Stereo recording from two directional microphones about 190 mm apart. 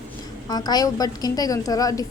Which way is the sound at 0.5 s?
20° left (ahead or behind).